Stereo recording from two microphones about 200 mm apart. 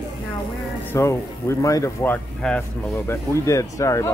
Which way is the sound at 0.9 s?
15° left (ahead or behind).